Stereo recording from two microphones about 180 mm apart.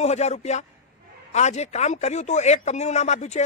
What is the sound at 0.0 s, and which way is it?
Speech, 35° left (ahead or behind).